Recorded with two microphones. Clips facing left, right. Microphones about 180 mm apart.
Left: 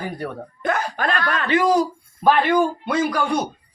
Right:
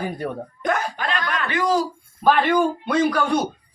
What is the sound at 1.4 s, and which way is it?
Speech, 20° left (ahead or behind).